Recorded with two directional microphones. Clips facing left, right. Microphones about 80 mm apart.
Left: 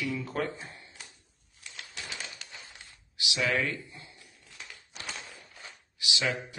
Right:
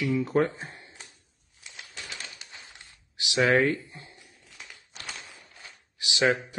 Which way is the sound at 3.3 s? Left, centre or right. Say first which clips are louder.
Right 7 dB; right.